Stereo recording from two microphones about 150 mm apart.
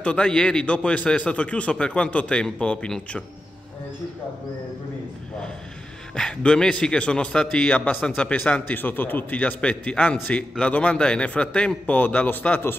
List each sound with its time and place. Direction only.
0.0 s a man's voice: 5° left (ahead or behind)
6.1 s a man's voice: 5° left (ahead or behind)